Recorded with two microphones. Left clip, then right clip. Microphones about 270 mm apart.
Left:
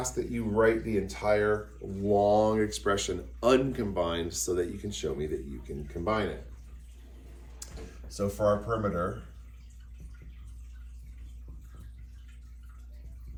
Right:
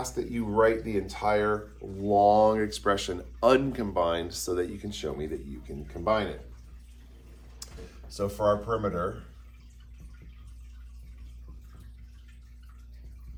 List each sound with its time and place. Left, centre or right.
0.0 s speech: centre
8.0 s speech: centre